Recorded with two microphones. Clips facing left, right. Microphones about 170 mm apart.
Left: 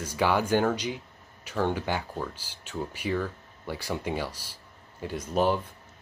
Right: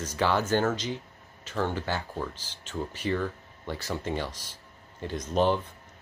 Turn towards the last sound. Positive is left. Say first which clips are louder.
# even
turn(degrees=10)  # may be behind; listen again after turning